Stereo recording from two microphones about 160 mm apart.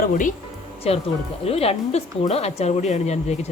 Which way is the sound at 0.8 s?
40° left (ahead or behind).